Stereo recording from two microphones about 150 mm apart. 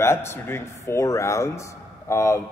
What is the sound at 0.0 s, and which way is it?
A man's voice, 15° left (ahead or behind).